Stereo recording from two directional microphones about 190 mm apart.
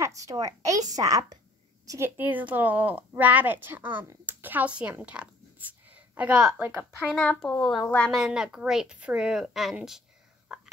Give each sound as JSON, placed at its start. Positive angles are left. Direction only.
{"t": 0.0, "sound": "a woman's voice", "side_deg": -15}
{"t": 10.5, "sound": "whispering", "side_deg": -5}